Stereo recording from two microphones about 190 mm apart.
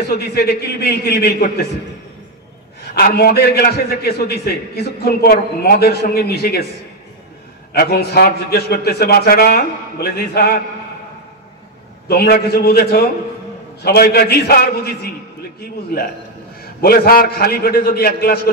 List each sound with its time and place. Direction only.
0.1 s a man's voice: 55° left (ahead or behind)
2.9 s a man's voice: 55° left (ahead or behind)
7.7 s a man's voice: 55° left (ahead or behind)
12.1 s a man's voice: 55° left (ahead or behind)